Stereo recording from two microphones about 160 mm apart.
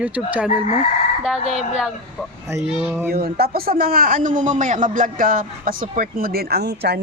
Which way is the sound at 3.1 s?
70° right (ahead or behind).